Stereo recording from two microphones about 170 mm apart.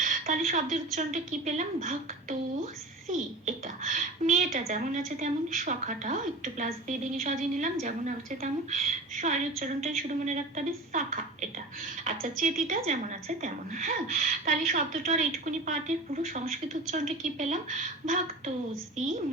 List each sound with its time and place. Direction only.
0.0 s a woman's voice: 50° right (ahead or behind)
3.1 s a woman's voice: 50° right (ahead or behind)